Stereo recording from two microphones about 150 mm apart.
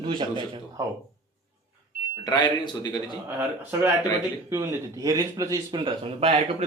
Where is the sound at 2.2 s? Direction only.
30° left (ahead or behind).